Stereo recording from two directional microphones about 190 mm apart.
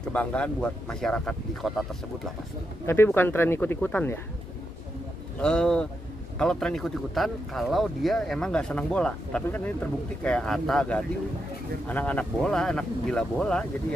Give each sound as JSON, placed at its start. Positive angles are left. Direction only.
{"t": 0.0, "sound": "speech", "side_deg": 10}
{"t": 2.9, "sound": "speech", "side_deg": 10}
{"t": 5.4, "sound": "speech", "side_deg": 5}